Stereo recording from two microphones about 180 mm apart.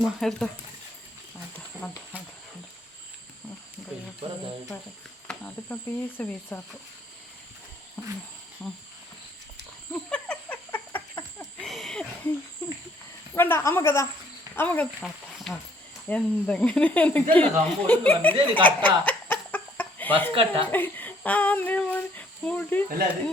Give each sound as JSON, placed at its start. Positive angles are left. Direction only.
{"t": 0.0, "sound": "speech", "side_deg": 0}
{"t": 1.8, "sound": "speech", "side_deg": 5}
{"t": 5.3, "sound": "speech", "side_deg": 10}
{"t": 8.0, "sound": "speech", "side_deg": 10}
{"t": 9.9, "sound": "a sound", "side_deg": 5}
{"t": 13.3, "sound": "speech", "side_deg": 15}
{"t": 18.2, "sound": "a sound", "side_deg": 10}
{"t": 20.3, "sound": "speech", "side_deg": -30}
{"t": 20.7, "sound": "speech", "side_deg": 10}